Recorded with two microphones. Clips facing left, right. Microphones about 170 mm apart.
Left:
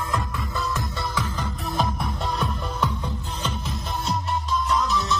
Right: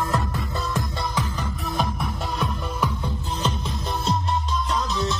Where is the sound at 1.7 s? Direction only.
Centre (ahead or behind).